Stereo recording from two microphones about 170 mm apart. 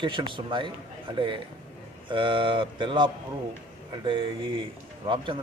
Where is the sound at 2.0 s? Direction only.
30° right (ahead or behind).